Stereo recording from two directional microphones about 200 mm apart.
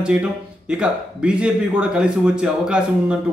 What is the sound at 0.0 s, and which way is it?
A man's voice, 5° right (ahead or behind).